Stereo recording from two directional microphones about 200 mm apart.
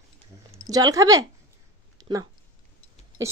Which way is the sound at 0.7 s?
20° right (ahead or behind).